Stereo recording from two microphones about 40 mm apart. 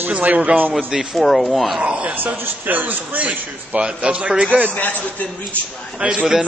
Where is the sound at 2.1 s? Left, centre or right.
Right.